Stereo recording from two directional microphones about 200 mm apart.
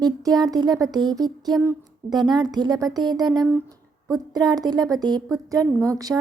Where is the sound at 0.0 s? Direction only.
20° right (ahead or behind).